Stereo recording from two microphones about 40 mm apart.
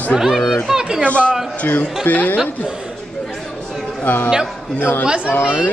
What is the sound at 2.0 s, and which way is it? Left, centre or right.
Speech, left.